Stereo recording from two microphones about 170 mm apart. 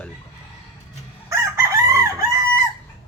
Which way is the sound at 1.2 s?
15° right (ahead or behind).